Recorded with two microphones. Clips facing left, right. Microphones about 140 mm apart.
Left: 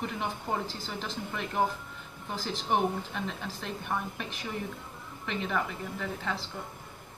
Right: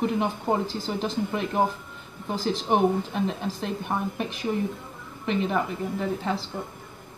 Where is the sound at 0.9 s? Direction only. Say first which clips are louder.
Right 9 dB; 20° right (ahead or behind).